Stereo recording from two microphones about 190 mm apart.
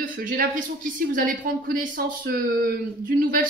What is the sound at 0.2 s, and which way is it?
A woman's voice, 45° right (ahead or behind).